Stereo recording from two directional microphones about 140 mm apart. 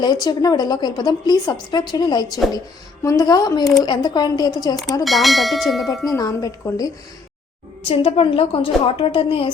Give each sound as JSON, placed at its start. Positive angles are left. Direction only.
{"t": 0.0, "sound": "a woman's voice", "side_deg": 30}
{"t": 5.0, "sound": "bell", "side_deg": 0}
{"t": 6.1, "sound": "a woman's voice", "side_deg": 25}
{"t": 7.9, "sound": "a woman's voice", "side_deg": 45}